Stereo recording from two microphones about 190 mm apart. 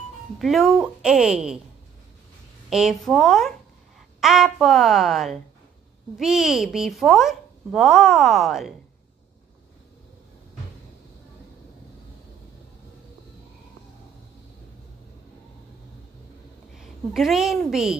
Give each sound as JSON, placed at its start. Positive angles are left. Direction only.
{"t": 0.4, "sound": "a child's voice", "side_deg": 0}
{"t": 2.7, "sound": "a child's voice", "side_deg": 0}
{"t": 16.7, "sound": "a woman's voice", "side_deg": 0}